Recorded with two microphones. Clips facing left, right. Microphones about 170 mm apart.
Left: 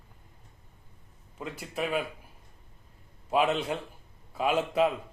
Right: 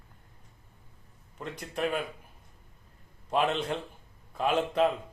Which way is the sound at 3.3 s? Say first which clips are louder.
Left 2 dB; 5° left (ahead or behind).